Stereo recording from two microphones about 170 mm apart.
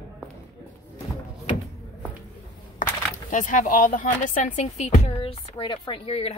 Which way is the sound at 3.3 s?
50° left (ahead or behind).